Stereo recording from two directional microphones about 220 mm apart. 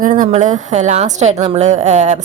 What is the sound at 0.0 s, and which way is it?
A woman's voice, 35° right (ahead or behind).